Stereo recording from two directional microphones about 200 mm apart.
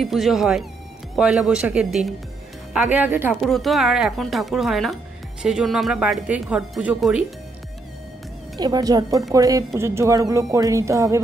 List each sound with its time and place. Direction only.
0.0 s speech: centre (ahead or behind)
3.3 s speech: centre (ahead or behind)
8.5 s a woman's voice: 20° right (ahead or behind)